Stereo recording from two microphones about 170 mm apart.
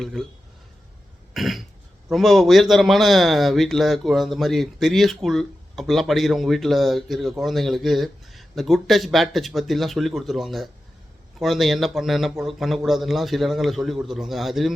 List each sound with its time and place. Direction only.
0.0 s a man's voice: centre (ahead or behind)
1.3 s cough: centre (ahead or behind)
2.0 s a man's voice: centre (ahead or behind)